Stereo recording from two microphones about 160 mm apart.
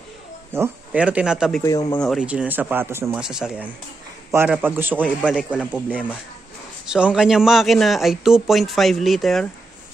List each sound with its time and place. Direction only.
0.5 s speech: 10° right (ahead or behind)
1.6 s speech: 20° left (ahead or behind)
2.0 s a man's voice: centre (ahead or behind)
5.0 s a man's voice: 5° left (ahead or behind)
5.5 s speech: 5° right (ahead or behind)
6.9 s a man's voice: 5° right (ahead or behind)